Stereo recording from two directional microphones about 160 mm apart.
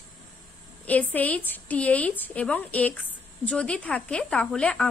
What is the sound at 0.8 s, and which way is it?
A woman's voice, 10° left (ahead or behind).